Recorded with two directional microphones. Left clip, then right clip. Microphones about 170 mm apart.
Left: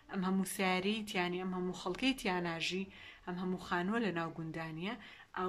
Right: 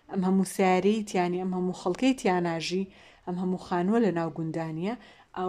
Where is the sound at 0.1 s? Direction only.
35° right (ahead or behind).